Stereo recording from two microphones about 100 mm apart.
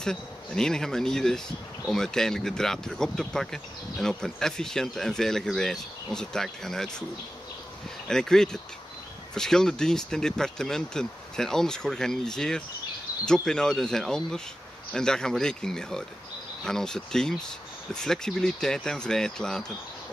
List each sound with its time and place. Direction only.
0.0 s speech: 5° left (ahead or behind)
8.1 s speech: 5° left (ahead or behind)